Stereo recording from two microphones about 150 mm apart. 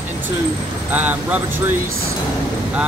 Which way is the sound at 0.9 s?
10° right (ahead or behind).